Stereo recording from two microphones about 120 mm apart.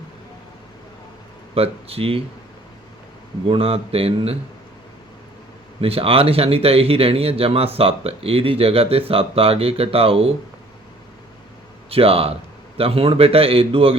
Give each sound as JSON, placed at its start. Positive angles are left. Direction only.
{"t": 1.5, "sound": "speech", "side_deg": -55}
{"t": 3.5, "sound": "speech", "side_deg": -55}
{"t": 5.8, "sound": "speech", "side_deg": -50}
{"t": 11.9, "sound": "speech", "side_deg": -55}